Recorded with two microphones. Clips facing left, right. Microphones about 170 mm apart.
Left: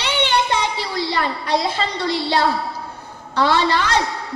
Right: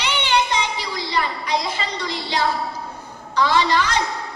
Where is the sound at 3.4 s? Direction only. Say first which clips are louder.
Left 1 dB; 55° left (ahead or behind).